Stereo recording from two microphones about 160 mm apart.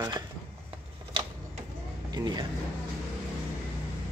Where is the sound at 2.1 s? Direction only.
25° right (ahead or behind).